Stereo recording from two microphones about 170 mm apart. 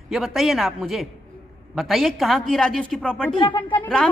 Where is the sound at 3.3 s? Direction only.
30° left (ahead or behind).